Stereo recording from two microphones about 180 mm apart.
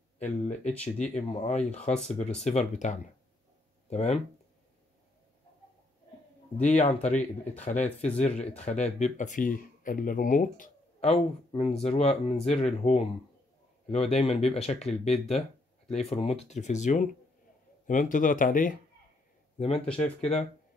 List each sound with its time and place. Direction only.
0.4 s speech: 40° left (ahead or behind)
6.6 s speech: 40° left (ahead or behind)